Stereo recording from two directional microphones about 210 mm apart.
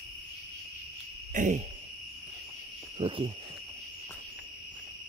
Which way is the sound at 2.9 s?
25° right (ahead or behind).